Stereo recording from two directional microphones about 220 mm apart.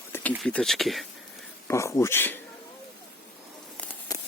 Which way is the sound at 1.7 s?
15° left (ahead or behind).